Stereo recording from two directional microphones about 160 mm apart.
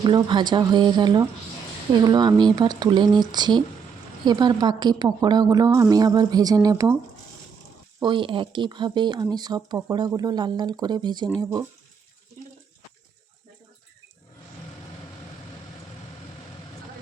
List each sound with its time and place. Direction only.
0.0 s a woman's voice: 30° right (ahead or behind)
8.0 s a woman's voice: 30° right (ahead or behind)